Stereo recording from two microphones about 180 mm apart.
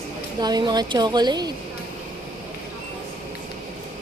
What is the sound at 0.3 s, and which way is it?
A woman's voice, 25° right (ahead or behind).